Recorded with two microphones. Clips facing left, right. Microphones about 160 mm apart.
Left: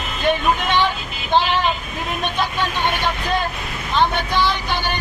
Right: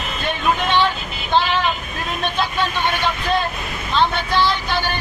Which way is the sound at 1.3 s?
15° left (ahead or behind).